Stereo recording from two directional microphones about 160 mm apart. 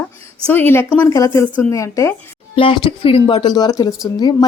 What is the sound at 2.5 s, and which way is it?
Speech, 30° left (ahead or behind).